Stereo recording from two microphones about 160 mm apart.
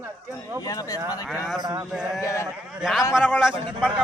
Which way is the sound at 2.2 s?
20° left (ahead or behind).